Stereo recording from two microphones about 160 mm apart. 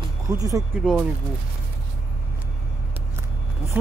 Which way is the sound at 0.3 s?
20° right (ahead or behind).